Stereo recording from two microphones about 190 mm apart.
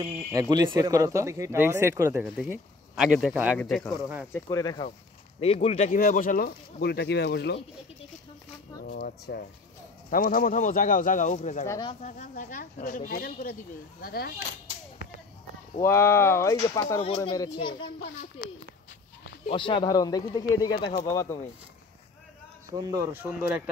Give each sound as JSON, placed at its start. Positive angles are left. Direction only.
{"t": 0.0, "sound": "speech", "side_deg": -20}
{"t": 4.3, "sound": "speech", "side_deg": 15}
{"t": 5.4, "sound": "speech", "side_deg": 30}
{"t": 8.8, "sound": "speech", "side_deg": 55}
{"t": 11.6, "sound": "speech", "side_deg": 15}
{"t": 11.9, "sound": "speech", "side_deg": 40}
{"t": 15.8, "sound": "speech", "side_deg": 15}
{"t": 19.5, "sound": "speech", "side_deg": 25}
{"t": 22.7, "sound": "speech", "side_deg": -20}